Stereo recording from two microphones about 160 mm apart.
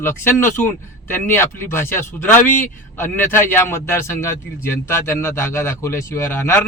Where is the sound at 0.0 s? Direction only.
15° left (ahead or behind).